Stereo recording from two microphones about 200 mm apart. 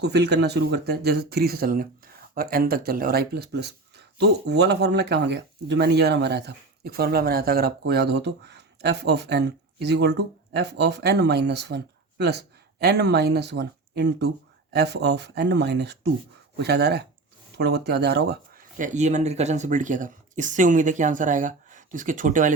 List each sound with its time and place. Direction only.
0.0 s speech: 55° right (ahead or behind); by 22.5 s 40° right (ahead or behind)